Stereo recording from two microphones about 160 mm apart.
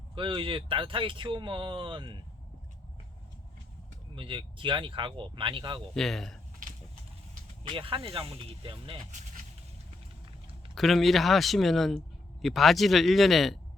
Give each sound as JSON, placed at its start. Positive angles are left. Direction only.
{"t": 0.2, "sound": "speech", "side_deg": -30}
{"t": 4.1, "sound": "speech", "side_deg": -30}
{"t": 5.9, "sound": "speech", "side_deg": 0}
{"t": 7.7, "sound": "speech", "side_deg": -35}
{"t": 9.1, "sound": "vehicle", "side_deg": -50}
{"t": 10.8, "sound": "speech", "side_deg": 0}